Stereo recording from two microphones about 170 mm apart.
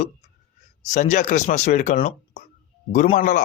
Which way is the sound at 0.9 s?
45° left (ahead or behind).